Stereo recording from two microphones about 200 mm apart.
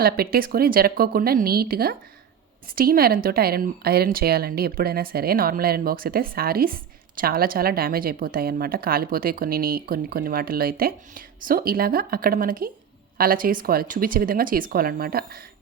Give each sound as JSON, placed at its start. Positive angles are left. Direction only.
{"t": 0.0, "sound": "speech", "side_deg": -50}